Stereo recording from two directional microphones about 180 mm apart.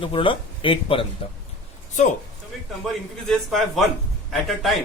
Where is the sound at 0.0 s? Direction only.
30° left (ahead or behind).